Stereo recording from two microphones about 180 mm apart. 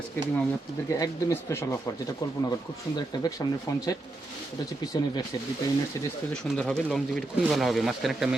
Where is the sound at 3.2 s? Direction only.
20° left (ahead or behind).